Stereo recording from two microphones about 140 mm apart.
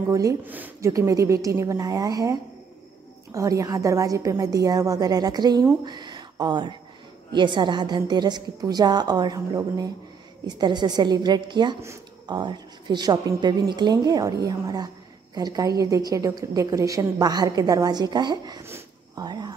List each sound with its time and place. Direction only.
0.1 s a woman's voice: 25° right (ahead or behind)